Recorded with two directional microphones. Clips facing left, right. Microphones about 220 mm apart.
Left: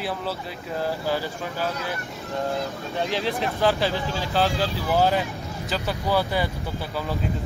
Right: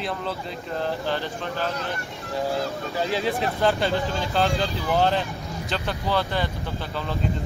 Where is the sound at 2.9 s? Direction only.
Centre (ahead or behind).